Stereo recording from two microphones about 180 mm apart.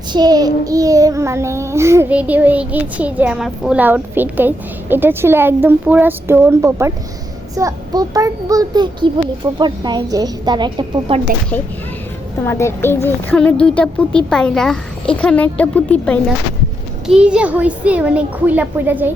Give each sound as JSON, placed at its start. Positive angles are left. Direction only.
{"t": 0.1, "sound": "child singing", "side_deg": -20}
{"t": 7.5, "sound": "a child's voice", "side_deg": -20}
{"t": 11.5, "sound": "speech", "side_deg": 5}
{"t": 17.1, "sound": "child singing", "side_deg": -5}